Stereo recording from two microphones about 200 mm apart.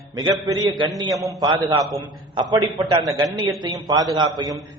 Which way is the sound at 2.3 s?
15° right (ahead or behind).